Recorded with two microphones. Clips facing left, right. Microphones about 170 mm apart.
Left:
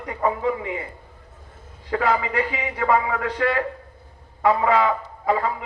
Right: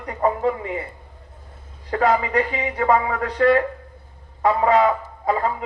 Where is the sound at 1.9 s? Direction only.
40° right (ahead or behind).